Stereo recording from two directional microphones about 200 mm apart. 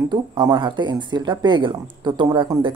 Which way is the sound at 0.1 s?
20° right (ahead or behind).